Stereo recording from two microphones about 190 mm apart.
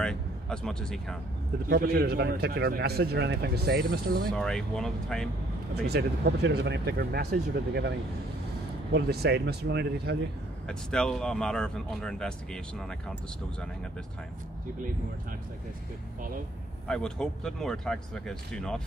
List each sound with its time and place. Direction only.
0.0 s speech: 5° left (ahead or behind)
1.7 s a man's voice: 55° right (ahead or behind)
4.3 s speech: 5° left (ahead or behind)
5.9 s a man's voice: 60° right (ahead or behind)
8.9 s a man's voice: 60° right (ahead or behind)
10.7 s speech: 5° left (ahead or behind)
16.8 s speech: 5° left (ahead or behind)